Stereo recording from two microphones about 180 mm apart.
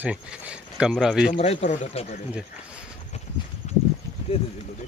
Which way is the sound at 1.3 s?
40° left (ahead or behind).